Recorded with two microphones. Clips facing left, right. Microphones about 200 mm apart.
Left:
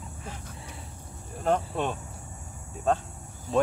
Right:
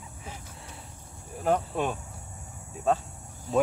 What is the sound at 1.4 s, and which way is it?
Cricket, 5° right (ahead or behind).